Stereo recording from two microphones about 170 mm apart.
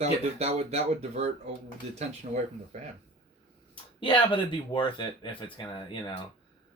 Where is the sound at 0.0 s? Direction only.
40° right (ahead or behind).